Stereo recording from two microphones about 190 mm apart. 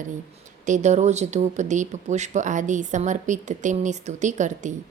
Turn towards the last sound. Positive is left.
turn(degrees=-40)  # may be behind; listen again after turning